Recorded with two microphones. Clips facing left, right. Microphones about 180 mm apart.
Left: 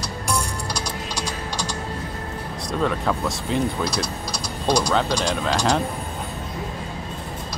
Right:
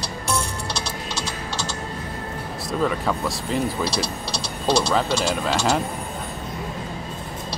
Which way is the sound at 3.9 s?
30° right (ahead or behind).